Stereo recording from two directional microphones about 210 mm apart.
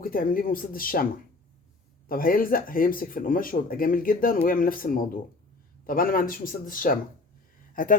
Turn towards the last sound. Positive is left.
turn(degrees=40)  # may be behind; listen again after turning